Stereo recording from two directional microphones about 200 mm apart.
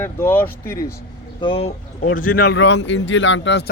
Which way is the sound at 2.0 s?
45° left (ahead or behind).